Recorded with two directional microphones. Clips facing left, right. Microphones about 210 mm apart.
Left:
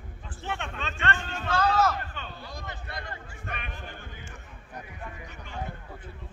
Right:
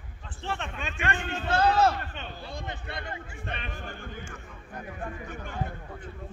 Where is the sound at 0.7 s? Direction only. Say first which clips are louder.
Even; 15° right (ahead or behind).